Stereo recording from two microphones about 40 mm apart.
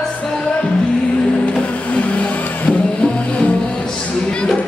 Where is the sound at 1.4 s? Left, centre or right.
Left.